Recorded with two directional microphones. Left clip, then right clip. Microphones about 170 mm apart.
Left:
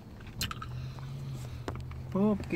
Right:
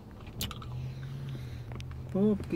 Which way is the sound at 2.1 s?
10° left (ahead or behind).